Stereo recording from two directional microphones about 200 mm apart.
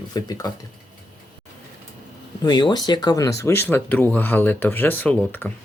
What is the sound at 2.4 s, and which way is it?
Speech, 20° left (ahead or behind).